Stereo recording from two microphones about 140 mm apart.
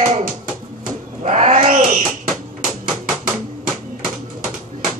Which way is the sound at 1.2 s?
55° right (ahead or behind).